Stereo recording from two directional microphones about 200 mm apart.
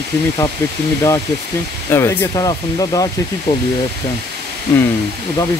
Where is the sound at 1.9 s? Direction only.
10° left (ahead or behind).